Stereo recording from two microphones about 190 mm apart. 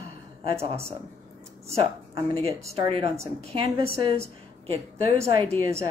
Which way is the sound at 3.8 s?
50° left (ahead or behind).